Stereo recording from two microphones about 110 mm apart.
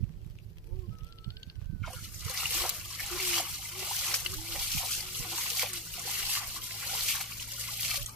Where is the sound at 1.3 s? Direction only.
30° left (ahead or behind).